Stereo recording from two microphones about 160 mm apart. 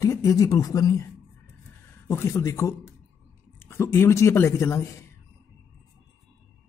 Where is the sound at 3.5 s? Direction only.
15° left (ahead or behind).